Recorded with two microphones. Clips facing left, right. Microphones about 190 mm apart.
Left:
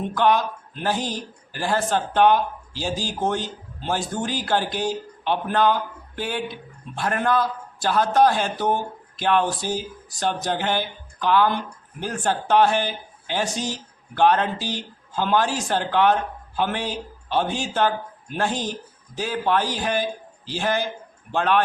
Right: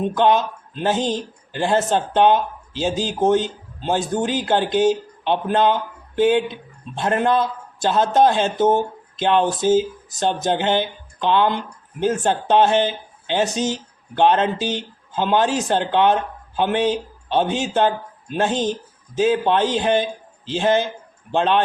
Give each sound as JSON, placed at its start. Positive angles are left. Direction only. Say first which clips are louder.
{"t": 0.0, "sound": "a man's voice", "louder": "right 3 dB", "side_deg": -20}